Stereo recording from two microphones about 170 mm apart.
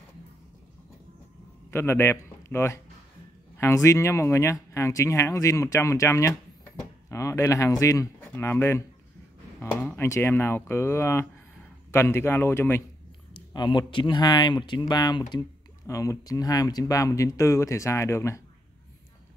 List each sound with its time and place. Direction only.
1.7 s speech: 15° left (ahead or behind)
13.3 s speech: 25° left (ahead or behind)